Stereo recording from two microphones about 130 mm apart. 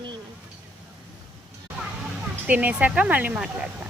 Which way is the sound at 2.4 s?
10° right (ahead or behind).